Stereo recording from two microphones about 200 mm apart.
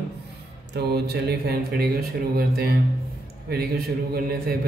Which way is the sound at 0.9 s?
55° right (ahead or behind).